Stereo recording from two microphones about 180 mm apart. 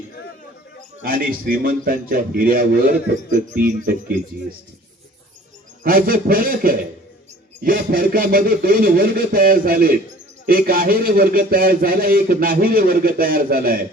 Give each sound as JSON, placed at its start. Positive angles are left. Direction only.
{"t": 1.0, "sound": "speech", "side_deg": -55}
{"t": 5.8, "sound": "a man's voice", "side_deg": -55}